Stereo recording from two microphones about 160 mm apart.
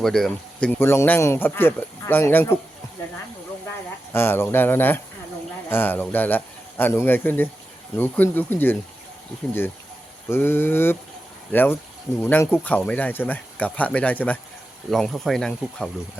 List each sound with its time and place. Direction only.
0.0 s speech: centre (ahead or behind)
3.0 s a sound: 15° left (ahead or behind)
4.1 s speech: 15° left (ahead or behind)
10.2 s speech: 15° left (ahead or behind)